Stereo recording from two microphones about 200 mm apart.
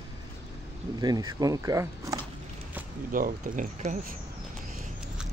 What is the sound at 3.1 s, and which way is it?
Speech, 45° right (ahead or behind).